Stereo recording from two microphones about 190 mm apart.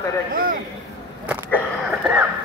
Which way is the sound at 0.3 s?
50° right (ahead or behind).